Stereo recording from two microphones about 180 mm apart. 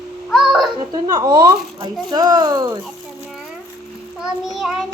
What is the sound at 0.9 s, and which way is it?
Speech, 20° right (ahead or behind).